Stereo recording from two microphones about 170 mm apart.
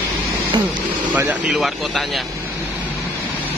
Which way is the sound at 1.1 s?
10° right (ahead or behind).